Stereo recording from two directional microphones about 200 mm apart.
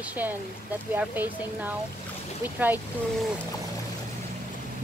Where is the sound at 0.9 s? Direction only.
10° right (ahead or behind).